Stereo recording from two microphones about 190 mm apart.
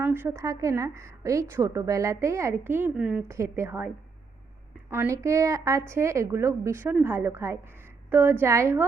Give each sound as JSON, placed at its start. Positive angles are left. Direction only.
{"t": 0.0, "sound": "a woman's voice", "side_deg": -10}